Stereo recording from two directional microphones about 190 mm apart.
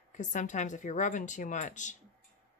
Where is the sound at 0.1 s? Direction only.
40° left (ahead or behind).